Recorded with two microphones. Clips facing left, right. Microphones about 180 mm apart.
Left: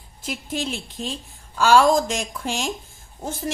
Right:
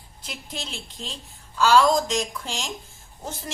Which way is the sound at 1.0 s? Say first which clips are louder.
Left 7 dB; 65° left (ahead or behind).